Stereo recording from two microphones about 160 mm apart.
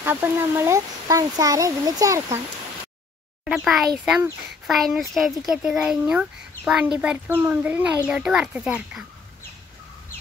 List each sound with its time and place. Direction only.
0.0 s speech: 15° right (ahead or behind)
3.4 s a child's voice: centre (ahead or behind)